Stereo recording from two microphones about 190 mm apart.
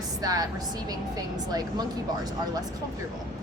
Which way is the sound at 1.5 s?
20° right (ahead or behind).